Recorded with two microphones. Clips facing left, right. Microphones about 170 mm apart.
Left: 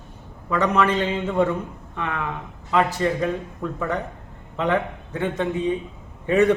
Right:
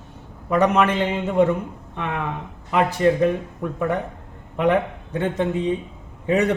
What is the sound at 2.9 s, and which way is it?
A man's voice, 15° right (ahead or behind).